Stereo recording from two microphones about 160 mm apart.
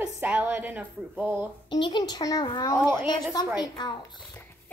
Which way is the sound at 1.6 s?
30° left (ahead or behind).